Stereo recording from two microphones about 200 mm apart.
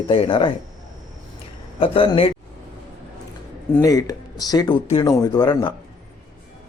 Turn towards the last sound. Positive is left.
turn(degrees=20)  # may be behind; listen again after turning